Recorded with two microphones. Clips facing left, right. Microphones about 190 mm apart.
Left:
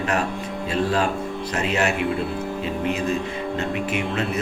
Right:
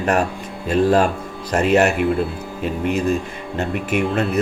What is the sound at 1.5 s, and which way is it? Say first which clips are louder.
Speech: right 8 dB; 45° right (ahead or behind).